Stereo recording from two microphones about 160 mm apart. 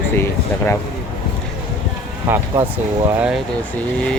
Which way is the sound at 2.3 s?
15° right (ahead or behind).